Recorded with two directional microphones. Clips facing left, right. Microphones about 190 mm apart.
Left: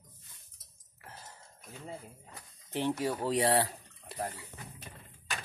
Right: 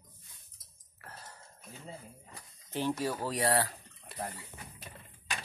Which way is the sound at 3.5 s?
25° left (ahead or behind).